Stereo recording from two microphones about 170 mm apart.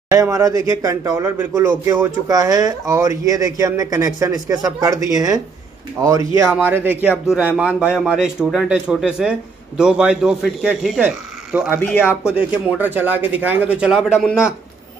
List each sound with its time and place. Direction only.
0.1 s a man's voice: 20° right (ahead or behind)
11.9 s speech: 10° left (ahead or behind)
12.4 s speech: 10° right (ahead or behind)